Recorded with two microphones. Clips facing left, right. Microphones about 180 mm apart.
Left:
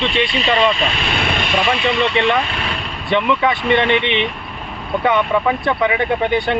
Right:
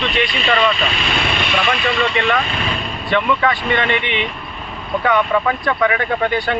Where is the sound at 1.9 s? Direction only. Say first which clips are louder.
Left 2 dB; 20° left (ahead or behind).